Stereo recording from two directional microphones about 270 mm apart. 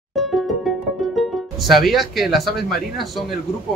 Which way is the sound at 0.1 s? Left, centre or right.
Centre.